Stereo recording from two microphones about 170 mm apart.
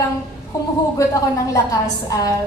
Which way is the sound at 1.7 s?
20° left (ahead or behind).